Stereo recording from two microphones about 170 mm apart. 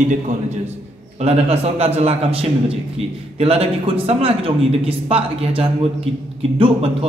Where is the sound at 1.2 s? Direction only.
35° right (ahead or behind).